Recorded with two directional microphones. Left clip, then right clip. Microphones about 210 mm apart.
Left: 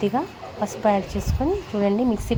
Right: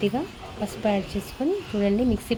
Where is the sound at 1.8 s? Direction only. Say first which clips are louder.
Left 2 dB; 10° right (ahead or behind).